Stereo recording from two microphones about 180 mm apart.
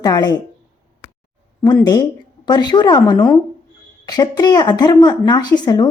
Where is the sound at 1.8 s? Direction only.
20° left (ahead or behind).